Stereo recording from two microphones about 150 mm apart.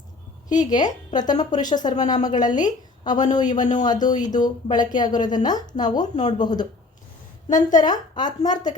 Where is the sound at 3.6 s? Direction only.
55° left (ahead or behind).